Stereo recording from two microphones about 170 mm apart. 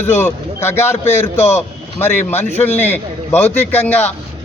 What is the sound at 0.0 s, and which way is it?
A man's voice, 15° left (ahead or behind).